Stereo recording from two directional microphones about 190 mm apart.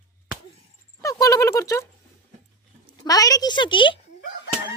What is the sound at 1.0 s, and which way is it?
Speech, 20° left (ahead or behind).